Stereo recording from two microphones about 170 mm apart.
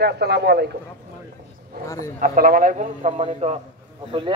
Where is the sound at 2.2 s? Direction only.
55° right (ahead or behind).